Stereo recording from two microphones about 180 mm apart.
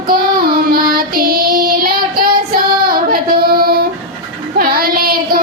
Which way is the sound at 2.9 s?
55° right (ahead or behind).